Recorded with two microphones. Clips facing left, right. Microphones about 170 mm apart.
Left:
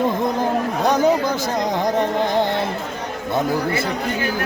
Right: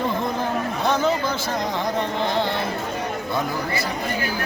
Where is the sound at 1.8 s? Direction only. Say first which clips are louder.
Left 5 dB; 45° left (ahead or behind).